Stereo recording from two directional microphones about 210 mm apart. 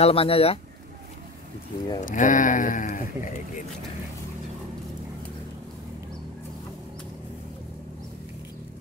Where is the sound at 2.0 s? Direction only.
35° left (ahead or behind).